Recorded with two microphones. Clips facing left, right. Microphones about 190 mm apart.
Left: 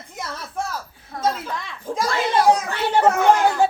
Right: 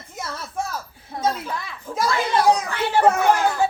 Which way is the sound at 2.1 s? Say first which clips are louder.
Left 1 dB; 25° left (ahead or behind).